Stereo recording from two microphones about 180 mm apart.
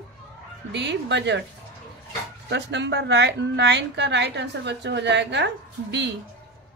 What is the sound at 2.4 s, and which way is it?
A woman's voice, 75° right (ahead or behind).